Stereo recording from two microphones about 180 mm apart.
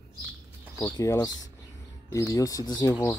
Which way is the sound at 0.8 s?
15° left (ahead or behind).